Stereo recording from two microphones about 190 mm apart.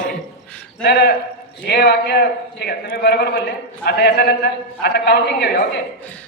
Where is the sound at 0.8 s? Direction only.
60° left (ahead or behind).